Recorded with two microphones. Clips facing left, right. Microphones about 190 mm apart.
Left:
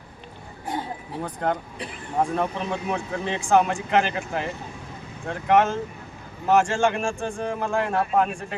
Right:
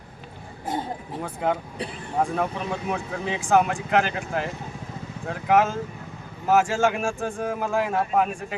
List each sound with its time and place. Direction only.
1.2 s speech: 5° right (ahead or behind)